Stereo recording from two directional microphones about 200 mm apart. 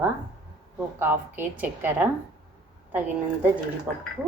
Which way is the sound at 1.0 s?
10° right (ahead or behind).